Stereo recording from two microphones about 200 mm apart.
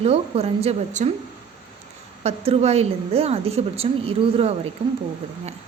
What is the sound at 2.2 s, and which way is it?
Speech, 30° right (ahead or behind).